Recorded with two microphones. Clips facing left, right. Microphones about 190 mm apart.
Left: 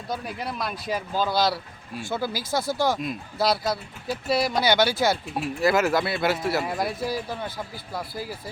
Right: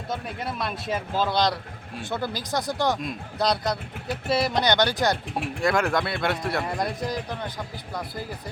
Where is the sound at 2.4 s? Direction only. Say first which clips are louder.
Left 1 dB; 15° right (ahead or behind).